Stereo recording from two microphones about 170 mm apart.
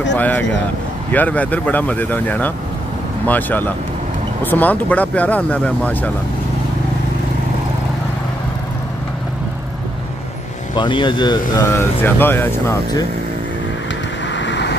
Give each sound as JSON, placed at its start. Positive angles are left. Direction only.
{"t": 0.2, "sound": "speech", "side_deg": 10}
{"t": 10.8, "sound": "speech", "side_deg": 30}
{"t": 11.5, "sound": "speech", "side_deg": 15}
{"t": 14.3, "sound": "vehicle", "side_deg": 90}